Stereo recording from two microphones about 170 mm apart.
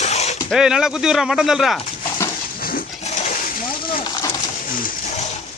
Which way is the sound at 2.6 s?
60° left (ahead or behind).